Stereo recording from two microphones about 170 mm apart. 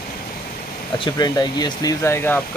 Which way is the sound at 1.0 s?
25° left (ahead or behind).